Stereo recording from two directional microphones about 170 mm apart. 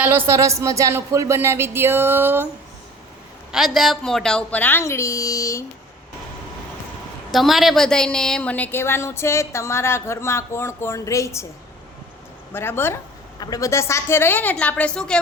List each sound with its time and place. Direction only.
0.0 s speech: 15° right (ahead or behind)
3.5 s a woman's voice: centre (ahead or behind); by 5.6 s 20° left (ahead or behind)
7.3 s a woman's voice: centre (ahead or behind); by 11.4 s 15° left (ahead or behind)
12.5 s a woman's voice: 15° left (ahead or behind)